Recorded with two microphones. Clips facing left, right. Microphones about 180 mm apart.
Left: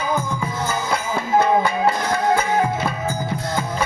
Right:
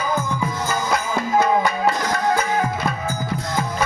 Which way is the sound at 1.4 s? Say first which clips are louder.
Left 1 dB; 30° left (ahead or behind).